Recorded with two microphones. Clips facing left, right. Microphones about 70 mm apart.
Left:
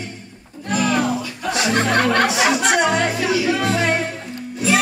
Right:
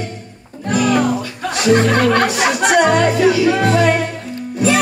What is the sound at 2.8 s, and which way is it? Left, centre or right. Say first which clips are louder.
Music: right 6 dB; right.